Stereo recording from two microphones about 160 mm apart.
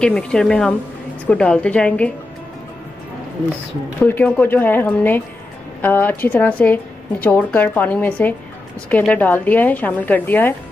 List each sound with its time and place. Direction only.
0.0 s a woman's voice: 5° left (ahead or behind)
4.0 s a woman's voice: 10° left (ahead or behind)